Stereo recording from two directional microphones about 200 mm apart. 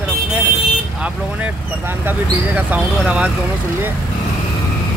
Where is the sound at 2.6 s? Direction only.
5° right (ahead or behind).